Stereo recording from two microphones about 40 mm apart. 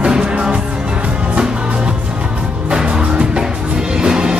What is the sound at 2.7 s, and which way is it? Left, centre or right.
Music, centre.